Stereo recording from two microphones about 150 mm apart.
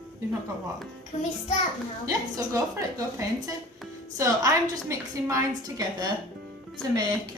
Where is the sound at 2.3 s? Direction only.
20° right (ahead or behind).